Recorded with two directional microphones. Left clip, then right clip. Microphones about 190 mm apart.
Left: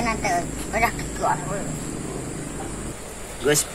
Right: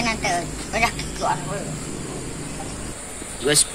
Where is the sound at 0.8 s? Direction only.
5° right (ahead or behind).